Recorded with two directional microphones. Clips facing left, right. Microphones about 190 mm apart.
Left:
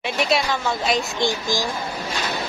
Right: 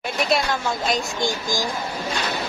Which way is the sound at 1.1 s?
45° right (ahead or behind).